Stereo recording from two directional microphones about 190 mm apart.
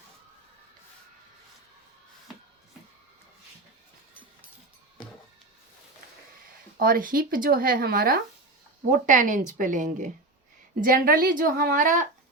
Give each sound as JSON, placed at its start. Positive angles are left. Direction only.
{"t": 6.7, "sound": "speech", "side_deg": -50}